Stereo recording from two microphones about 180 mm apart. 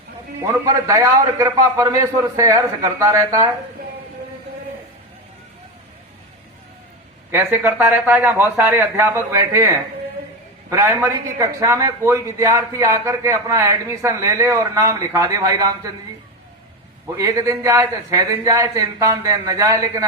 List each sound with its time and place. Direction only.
0.5 s speech: 15° right (ahead or behind)
7.3 s speech: 10° right (ahead or behind)
10.7 s speech: 15° right (ahead or behind)
17.2 s speech: 20° right (ahead or behind)